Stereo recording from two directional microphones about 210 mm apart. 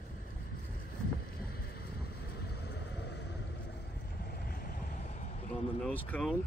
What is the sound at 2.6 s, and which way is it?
Vehicle, 50° left (ahead or behind).